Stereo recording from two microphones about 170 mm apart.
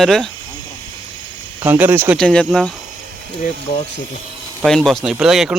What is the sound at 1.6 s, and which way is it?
Speech, 10° right (ahead or behind).